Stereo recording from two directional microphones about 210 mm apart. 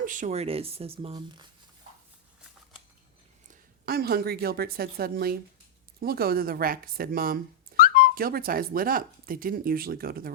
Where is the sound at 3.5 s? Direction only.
45° right (ahead or behind).